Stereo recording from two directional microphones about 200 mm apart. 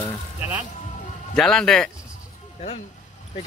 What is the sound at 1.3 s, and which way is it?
Speech, 5° left (ahead or behind).